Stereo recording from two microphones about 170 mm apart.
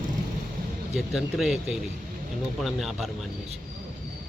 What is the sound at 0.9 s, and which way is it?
Speech, centre (ahead or behind).